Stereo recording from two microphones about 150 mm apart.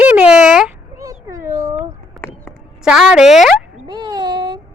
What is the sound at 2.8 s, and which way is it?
Speech, 5° right (ahead or behind).